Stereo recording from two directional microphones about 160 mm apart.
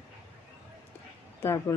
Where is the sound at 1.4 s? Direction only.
15° left (ahead or behind).